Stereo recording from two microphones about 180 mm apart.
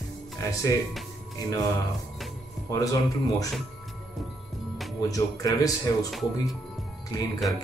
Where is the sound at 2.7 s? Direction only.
20° left (ahead or behind).